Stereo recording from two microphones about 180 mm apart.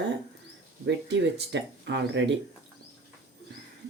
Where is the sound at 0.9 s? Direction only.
75° right (ahead or behind).